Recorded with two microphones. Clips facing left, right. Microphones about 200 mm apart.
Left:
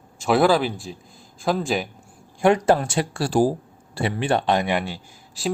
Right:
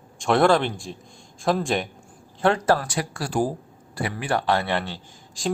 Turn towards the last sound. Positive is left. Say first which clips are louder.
# left 1 dB
turn(degrees=10)  # may be behind; listen again after turning